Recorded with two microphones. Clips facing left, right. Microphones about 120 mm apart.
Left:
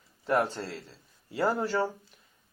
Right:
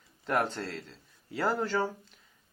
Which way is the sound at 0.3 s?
10° left (ahead or behind).